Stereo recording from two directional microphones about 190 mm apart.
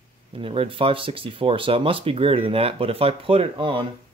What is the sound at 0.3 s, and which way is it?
Speech, 30° right (ahead or behind).